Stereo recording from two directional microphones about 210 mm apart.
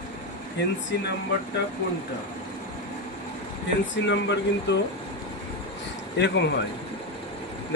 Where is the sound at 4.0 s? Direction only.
55° left (ahead or behind).